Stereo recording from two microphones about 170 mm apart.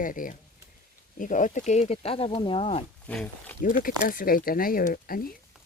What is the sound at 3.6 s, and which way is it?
Speech, 55° left (ahead or behind).